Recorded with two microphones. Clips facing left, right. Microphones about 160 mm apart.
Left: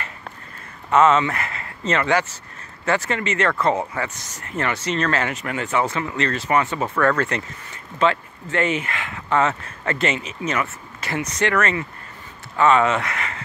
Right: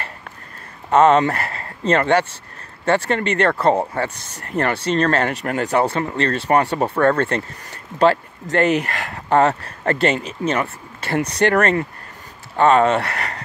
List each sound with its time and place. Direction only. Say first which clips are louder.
0.8 s speech: right 3 dB; 35° right (ahead or behind)